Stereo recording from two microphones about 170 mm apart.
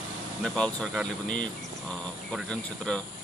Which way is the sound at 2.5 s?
5° left (ahead or behind).